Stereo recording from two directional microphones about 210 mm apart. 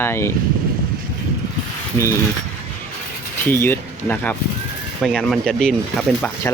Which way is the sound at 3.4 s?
10° left (ahead or behind).